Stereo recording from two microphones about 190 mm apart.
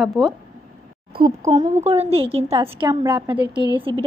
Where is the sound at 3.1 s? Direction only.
10° right (ahead or behind).